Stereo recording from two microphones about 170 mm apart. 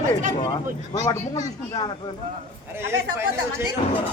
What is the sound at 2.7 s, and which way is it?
Speech, 15° right (ahead or behind).